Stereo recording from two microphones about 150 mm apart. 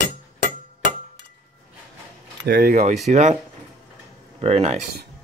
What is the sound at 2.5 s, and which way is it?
Speech, 85° right.